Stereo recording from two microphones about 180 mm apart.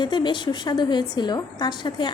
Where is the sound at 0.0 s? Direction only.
25° left (ahead or behind).